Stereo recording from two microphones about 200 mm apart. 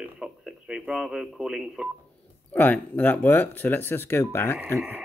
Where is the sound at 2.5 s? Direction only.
10° left (ahead or behind).